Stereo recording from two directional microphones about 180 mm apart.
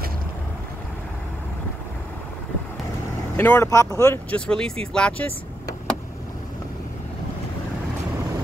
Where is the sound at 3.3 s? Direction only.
15° left (ahead or behind).